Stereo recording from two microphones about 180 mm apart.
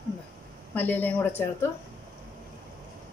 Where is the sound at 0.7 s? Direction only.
10° left (ahead or behind).